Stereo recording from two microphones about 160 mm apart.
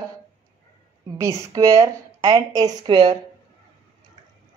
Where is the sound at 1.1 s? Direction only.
20° right (ahead or behind).